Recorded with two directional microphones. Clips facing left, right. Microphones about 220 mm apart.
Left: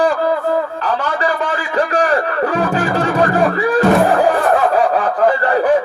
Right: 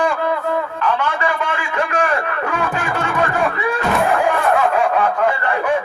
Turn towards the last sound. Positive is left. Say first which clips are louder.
# left 5 dB
turn(degrees=35)  # may be behind; listen again after turning